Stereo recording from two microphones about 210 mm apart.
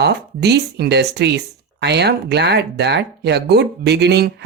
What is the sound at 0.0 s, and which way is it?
Speech, 55° right (ahead or behind).